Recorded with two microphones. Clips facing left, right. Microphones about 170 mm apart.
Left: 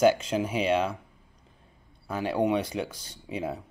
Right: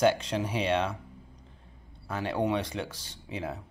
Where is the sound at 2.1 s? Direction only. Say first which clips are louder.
Left 3 dB; 10° left (ahead or behind).